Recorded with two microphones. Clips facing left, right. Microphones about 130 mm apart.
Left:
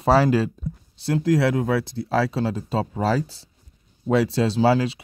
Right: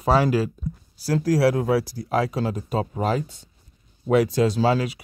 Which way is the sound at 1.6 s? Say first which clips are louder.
Right 1 dB; 25° right (ahead or behind).